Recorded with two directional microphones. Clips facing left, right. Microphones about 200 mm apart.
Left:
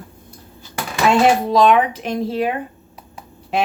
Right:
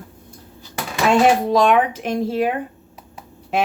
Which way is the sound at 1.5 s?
50° right (ahead or behind).